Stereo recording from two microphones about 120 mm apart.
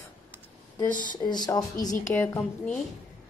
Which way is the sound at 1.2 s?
35° left (ahead or behind).